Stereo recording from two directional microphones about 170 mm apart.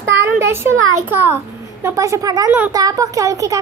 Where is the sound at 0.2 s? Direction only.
15° right (ahead or behind).